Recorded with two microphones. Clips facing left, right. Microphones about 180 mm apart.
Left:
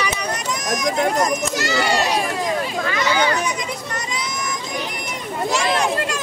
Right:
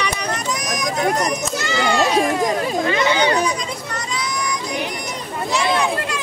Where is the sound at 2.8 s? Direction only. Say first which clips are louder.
Right 2 dB; 25° right (ahead or behind).